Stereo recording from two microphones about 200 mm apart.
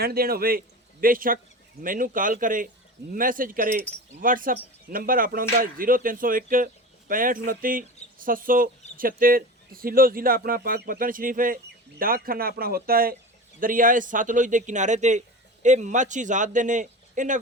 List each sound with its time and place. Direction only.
0.0 s a man's voice: 50° right (ahead or behind)